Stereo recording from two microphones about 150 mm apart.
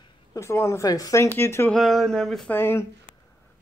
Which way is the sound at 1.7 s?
Centre (ahead or behind).